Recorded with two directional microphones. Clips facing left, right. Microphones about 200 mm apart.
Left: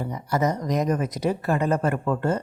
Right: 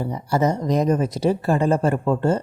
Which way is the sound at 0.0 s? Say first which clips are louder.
Right 3 dB; 30° right (ahead or behind).